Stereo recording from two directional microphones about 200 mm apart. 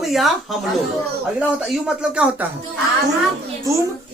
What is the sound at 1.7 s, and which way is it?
Speech, 5° right (ahead or behind).